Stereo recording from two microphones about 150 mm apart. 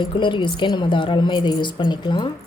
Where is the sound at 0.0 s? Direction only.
30° left (ahead or behind).